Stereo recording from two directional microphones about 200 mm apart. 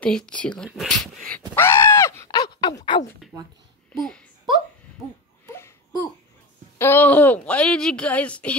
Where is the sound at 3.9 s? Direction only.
5° left (ahead or behind).